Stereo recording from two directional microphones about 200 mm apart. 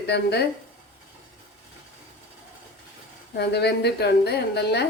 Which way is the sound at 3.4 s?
55° left (ahead or behind).